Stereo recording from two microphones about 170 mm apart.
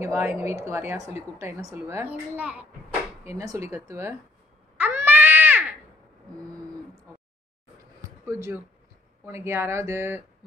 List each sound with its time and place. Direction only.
0.0 s speech: 15° right (ahead or behind)
4.7 s cat: 10° right (ahead or behind)
8.3 s speech: 15° right (ahead or behind)